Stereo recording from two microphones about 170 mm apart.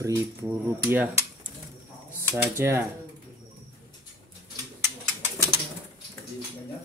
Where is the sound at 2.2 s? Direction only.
15° right (ahead or behind).